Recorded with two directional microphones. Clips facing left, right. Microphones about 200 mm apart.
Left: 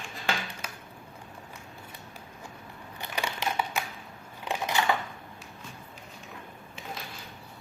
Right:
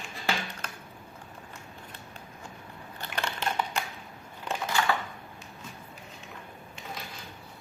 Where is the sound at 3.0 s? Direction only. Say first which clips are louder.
Even; 10° left (ahead or behind).